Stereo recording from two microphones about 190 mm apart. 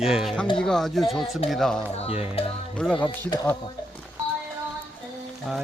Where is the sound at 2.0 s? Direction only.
30° left (ahead or behind).